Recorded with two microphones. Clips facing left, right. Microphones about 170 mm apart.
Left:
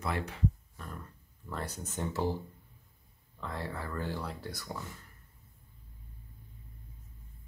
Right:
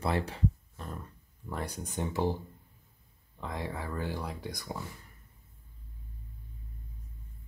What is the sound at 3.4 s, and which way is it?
Speech, 15° right (ahead or behind).